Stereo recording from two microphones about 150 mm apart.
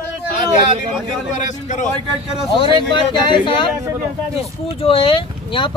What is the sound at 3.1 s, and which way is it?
Speech, 35° left (ahead or behind).